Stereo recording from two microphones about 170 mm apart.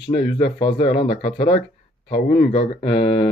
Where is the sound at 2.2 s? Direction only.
60° left (ahead or behind).